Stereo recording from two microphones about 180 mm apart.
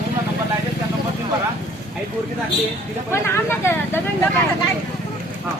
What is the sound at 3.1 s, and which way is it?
Speech, 15° left (ahead or behind).